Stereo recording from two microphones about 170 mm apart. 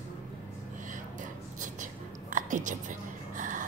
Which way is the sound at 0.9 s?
50° right (ahead or behind).